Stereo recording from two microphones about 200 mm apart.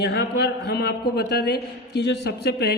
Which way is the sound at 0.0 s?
55° left (ahead or behind).